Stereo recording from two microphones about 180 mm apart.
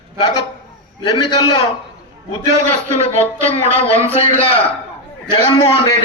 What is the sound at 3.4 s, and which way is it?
Speech, 35° left (ahead or behind).